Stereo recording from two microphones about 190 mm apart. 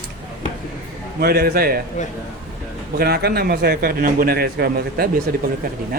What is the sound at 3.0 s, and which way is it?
Speech, 55° right (ahead or behind).